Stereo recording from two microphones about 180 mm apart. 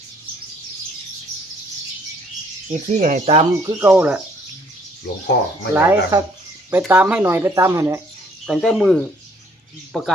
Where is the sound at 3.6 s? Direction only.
15° right (ahead or behind).